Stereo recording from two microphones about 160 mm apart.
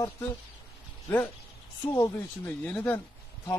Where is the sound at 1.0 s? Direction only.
10° left (ahead or behind).